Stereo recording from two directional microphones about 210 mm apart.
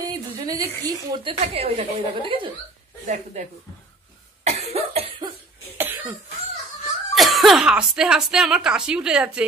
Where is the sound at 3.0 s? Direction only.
35° right (ahead or behind).